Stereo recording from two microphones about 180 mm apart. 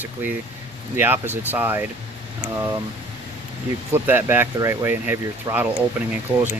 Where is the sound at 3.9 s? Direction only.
10° right (ahead or behind).